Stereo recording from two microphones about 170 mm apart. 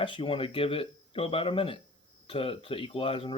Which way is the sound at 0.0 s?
30° left (ahead or behind).